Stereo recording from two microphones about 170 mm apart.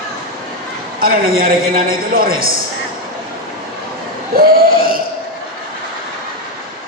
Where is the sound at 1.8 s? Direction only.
60° right (ahead or behind).